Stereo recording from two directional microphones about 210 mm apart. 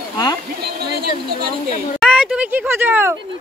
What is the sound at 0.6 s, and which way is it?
Speech, 50° right (ahead or behind).